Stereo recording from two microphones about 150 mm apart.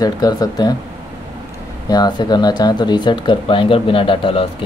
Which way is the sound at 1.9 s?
30° left (ahead or behind).